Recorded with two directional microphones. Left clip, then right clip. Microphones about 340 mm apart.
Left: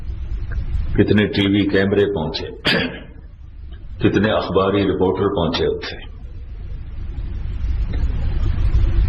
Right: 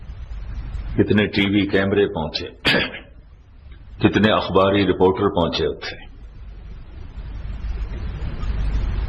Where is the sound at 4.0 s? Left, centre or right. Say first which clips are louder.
Even; right.